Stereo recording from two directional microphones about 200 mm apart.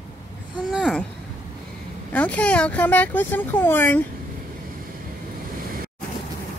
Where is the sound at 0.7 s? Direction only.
Centre (ahead or behind).